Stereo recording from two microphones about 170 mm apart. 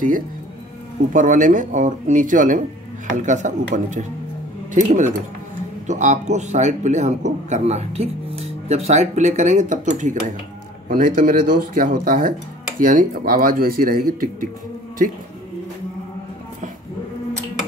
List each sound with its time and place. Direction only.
1.1 s a man's voice: 50° right (ahead or behind)